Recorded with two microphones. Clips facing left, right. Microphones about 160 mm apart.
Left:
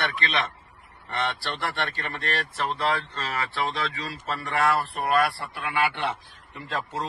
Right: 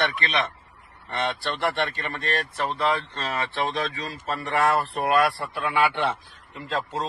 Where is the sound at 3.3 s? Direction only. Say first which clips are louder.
Right 2 dB; 20° right (ahead or behind).